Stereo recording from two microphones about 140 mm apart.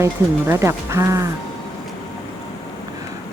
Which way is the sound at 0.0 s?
20° right (ahead or behind).